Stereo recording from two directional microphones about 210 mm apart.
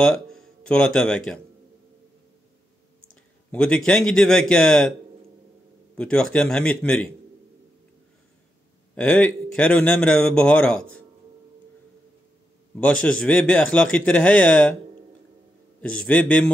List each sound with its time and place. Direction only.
0.0 s speech: 5° left (ahead or behind)
3.5 s speech: 5° left (ahead or behind)
5.9 s speech: 5° left (ahead or behind)
8.9 s speech: 5° left (ahead or behind)
13.0 s speech: 5° left (ahead or behind)
15.8 s speech: 5° left (ahead or behind)